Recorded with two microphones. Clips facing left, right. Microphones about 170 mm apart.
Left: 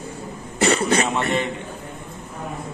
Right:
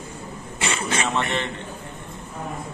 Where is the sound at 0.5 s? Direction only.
40° left (ahead or behind).